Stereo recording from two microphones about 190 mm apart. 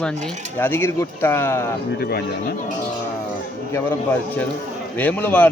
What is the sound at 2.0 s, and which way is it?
Speech, 55° left (ahead or behind).